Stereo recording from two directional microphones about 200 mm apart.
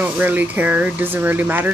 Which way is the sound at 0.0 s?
10° right (ahead or behind).